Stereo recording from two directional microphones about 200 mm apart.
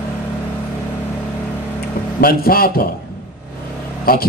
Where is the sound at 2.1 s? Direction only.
50° left (ahead or behind).